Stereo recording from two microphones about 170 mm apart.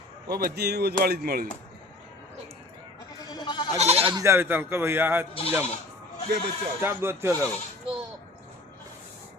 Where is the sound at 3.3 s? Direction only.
25° left (ahead or behind).